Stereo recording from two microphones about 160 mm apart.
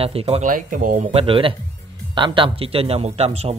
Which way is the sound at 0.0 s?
35° right (ahead or behind).